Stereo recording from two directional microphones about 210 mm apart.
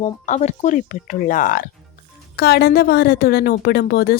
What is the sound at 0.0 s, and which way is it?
Speech, 35° left (ahead or behind).